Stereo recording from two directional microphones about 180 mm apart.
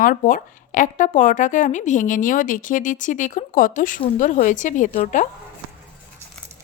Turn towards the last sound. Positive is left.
turn(degrees=45)  # may be behind; listen again after turning